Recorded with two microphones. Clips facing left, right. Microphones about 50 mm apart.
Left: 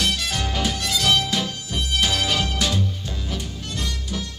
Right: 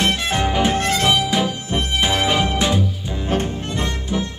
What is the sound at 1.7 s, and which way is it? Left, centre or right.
Music, right.